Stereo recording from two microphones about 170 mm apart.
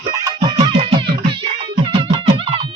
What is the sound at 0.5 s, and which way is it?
Music, 35° right (ahead or behind).